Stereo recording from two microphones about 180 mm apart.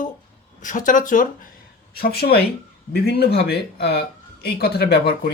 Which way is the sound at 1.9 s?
60° left (ahead or behind).